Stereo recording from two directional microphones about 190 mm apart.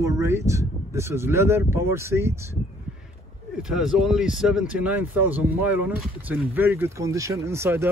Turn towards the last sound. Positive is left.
turn(degrees=-15)  # may be behind; listen again after turning